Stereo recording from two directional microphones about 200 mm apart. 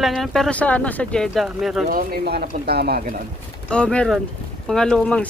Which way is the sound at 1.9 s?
50° right (ahead or behind).